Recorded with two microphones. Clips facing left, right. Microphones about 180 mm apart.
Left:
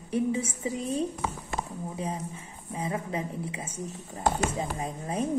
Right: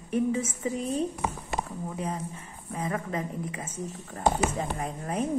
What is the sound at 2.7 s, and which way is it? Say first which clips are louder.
Speech: right 1 dB; 15° left (ahead or behind).